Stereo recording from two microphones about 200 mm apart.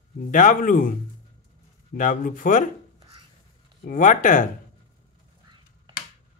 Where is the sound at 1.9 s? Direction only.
40° left (ahead or behind).